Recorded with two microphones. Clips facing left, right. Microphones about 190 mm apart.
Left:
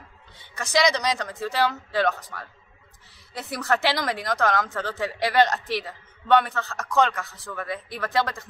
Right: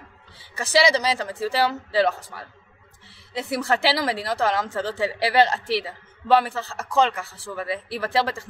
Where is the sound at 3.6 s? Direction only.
30° right (ahead or behind).